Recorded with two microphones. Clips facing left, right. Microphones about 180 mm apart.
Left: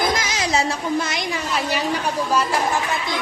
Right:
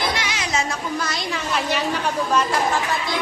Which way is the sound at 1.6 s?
10° left (ahead or behind).